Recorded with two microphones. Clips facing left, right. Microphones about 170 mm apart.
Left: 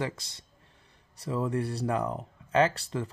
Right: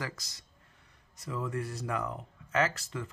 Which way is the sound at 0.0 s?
30° left (ahead or behind).